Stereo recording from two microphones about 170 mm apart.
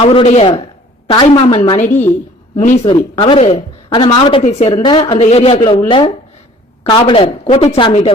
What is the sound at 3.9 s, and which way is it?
A woman's voice, 25° left (ahead or behind).